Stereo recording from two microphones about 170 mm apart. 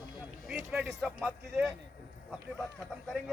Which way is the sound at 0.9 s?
Centre (ahead or behind).